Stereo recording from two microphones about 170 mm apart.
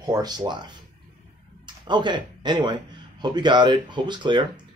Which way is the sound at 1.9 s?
25° right (ahead or behind).